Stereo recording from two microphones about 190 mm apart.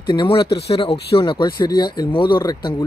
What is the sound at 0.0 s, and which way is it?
Speech, 25° left (ahead or behind).